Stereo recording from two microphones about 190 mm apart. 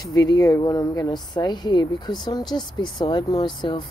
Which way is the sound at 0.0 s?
20° left (ahead or behind).